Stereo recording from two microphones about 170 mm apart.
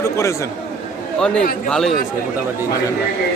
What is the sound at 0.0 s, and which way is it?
Chatter, 15° left (ahead or behind).